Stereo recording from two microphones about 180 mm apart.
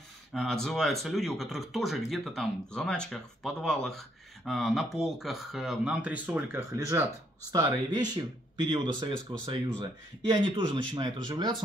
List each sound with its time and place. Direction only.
0.3 s speech: centre (ahead or behind); by 11.5 s 25° right (ahead or behind)